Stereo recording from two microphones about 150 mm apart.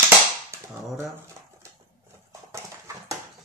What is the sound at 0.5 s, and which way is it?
Dog, 15° right (ahead or behind).